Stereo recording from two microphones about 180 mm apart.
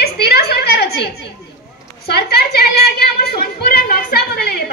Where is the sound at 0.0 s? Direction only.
65° left (ahead or behind).